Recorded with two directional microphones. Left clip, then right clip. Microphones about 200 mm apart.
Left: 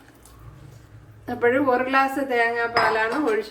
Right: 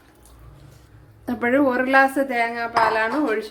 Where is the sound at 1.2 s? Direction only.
40° right (ahead or behind).